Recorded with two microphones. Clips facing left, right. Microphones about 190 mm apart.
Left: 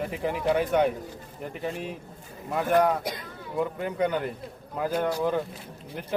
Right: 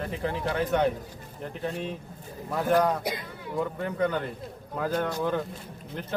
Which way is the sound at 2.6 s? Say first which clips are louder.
Left 1 dB; centre (ahead or behind).